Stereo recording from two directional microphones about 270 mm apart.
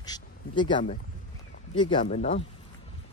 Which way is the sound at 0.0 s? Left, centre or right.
Centre.